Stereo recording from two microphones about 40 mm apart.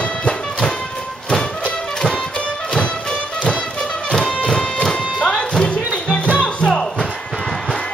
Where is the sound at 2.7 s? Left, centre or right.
Centre.